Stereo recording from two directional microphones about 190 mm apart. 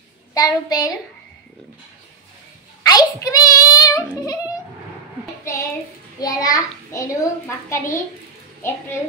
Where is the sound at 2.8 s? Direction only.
20° left (ahead or behind).